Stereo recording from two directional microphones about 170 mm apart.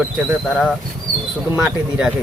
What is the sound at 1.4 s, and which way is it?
Speech, 10° right (ahead or behind).